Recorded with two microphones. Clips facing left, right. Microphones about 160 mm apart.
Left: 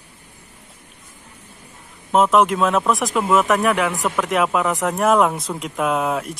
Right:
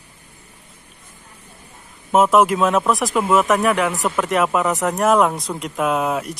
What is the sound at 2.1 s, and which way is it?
Speech, 5° right (ahead or behind).